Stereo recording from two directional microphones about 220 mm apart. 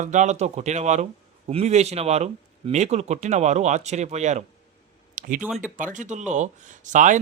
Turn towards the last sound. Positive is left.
turn(degrees=-35)  # may be behind; listen again after turning